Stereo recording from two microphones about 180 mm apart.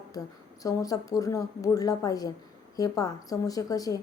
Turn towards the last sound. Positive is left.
turn(degrees=20)  # may be behind; listen again after turning